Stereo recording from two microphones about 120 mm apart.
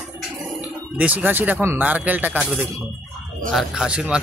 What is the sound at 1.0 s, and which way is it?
A man's voice, 15° right (ahead or behind).